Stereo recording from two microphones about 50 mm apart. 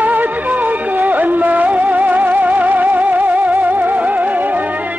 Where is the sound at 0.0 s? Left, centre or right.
Right.